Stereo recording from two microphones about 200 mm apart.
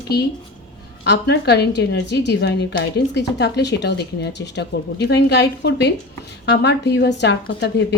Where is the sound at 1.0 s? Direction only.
60° left (ahead or behind).